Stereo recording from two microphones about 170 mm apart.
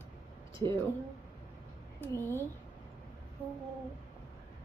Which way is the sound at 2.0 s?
10° left (ahead or behind).